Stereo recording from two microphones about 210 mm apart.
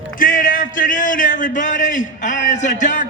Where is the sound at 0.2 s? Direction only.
40° left (ahead or behind).